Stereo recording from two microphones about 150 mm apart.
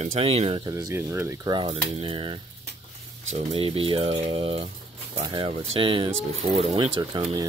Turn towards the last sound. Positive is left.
turn(degrees=-25)  # may be behind; listen again after turning